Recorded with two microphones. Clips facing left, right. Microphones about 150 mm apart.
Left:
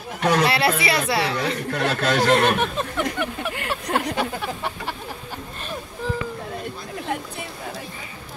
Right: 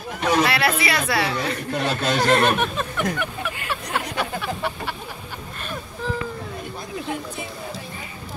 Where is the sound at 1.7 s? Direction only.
15° right (ahead or behind).